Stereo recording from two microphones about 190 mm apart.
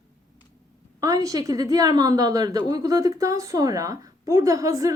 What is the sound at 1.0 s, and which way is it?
A woman's voice, 20° right (ahead or behind).